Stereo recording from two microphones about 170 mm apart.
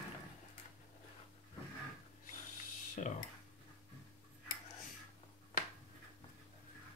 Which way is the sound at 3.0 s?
45° left (ahead or behind).